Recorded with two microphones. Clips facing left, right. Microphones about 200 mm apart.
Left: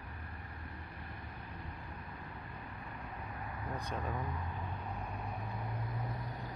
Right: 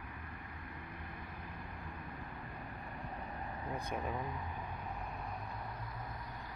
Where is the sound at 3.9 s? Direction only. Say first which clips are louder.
Even; 15° right (ahead or behind).